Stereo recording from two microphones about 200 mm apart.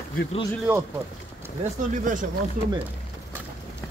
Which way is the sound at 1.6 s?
40° right (ahead or behind).